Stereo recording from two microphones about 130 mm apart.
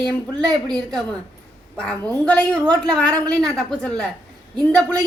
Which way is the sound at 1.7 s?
10° left (ahead or behind).